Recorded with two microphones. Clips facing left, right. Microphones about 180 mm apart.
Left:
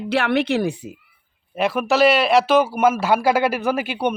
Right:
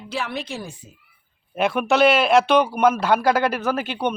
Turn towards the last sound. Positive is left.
turn(degrees=10)  # may be behind; listen again after turning